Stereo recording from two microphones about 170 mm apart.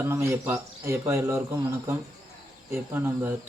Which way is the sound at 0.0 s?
15° right (ahead or behind).